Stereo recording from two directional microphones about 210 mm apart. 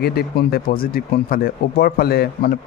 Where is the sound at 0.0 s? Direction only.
50° left (ahead or behind).